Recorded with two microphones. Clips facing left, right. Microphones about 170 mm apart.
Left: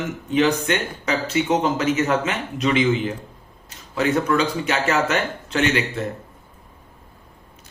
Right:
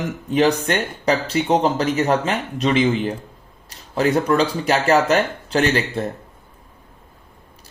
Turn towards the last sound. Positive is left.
turn(degrees=-35)  # may be behind; listen again after turning